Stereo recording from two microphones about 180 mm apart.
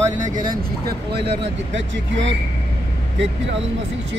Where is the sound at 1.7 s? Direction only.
90° right.